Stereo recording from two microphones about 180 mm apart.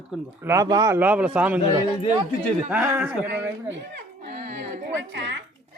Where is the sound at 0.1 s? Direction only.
Centre (ahead or behind).